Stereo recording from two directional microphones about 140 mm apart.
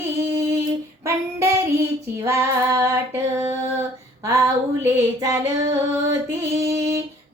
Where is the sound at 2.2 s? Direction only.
20° right (ahead or behind).